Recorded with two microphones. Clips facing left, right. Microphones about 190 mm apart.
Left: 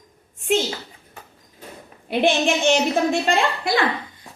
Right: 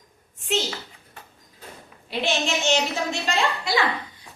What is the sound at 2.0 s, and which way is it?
A woman's voice, 55° left (ahead or behind).